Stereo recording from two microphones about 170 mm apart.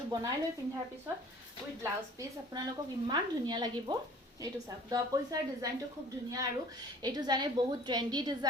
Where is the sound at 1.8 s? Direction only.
20° right (ahead or behind).